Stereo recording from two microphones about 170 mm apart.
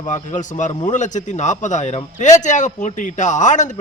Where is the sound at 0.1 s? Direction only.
45° left (ahead or behind).